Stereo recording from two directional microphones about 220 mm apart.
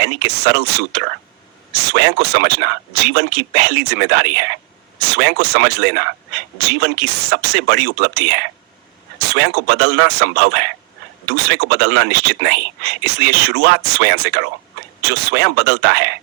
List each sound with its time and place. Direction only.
0.0 s speech: 50° right (ahead or behind)